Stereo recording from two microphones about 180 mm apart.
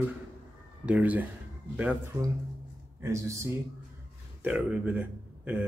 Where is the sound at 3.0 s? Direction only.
15° right (ahead or behind).